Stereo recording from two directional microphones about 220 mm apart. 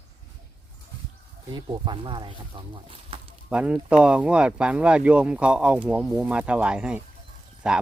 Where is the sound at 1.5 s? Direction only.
20° right (ahead or behind).